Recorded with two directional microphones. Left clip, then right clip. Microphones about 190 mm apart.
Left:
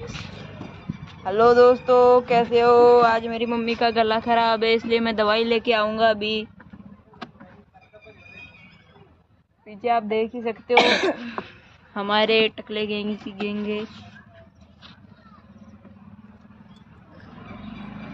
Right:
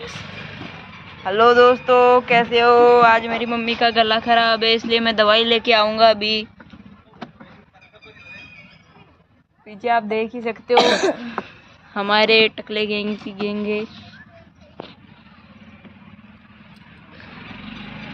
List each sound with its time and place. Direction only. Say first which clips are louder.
1.2 s speech: right 2 dB; 10° right (ahead or behind)
3.5 s speech: right 4 dB; 10° left (ahead or behind)
9.7 s speech: right 3 dB; 10° right (ahead or behind)
10.8 s speech: right 2 dB; 40° right (ahead or behind)
11.9 s speech: right 5 dB; 15° right (ahead or behind)